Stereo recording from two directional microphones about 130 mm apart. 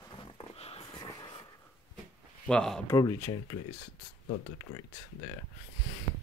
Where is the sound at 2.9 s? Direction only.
30° left (ahead or behind).